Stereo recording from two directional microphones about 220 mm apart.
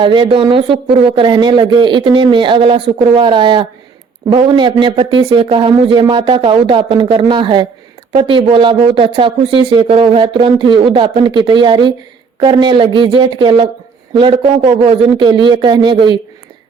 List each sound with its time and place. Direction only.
0.0 s a man's voice: 20° right (ahead or behind)